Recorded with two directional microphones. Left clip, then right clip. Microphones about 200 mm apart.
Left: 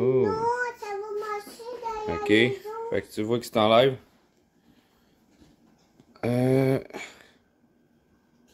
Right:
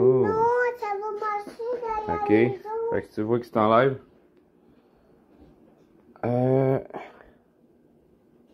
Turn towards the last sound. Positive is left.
turn(degrees=25)  # may be behind; listen again after turning